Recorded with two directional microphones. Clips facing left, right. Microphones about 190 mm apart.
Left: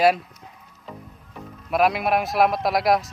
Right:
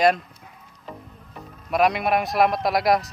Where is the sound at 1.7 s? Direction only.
Centre (ahead or behind).